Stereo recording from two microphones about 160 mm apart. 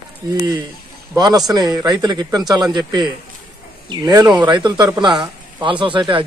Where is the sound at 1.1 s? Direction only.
25° right (ahead or behind).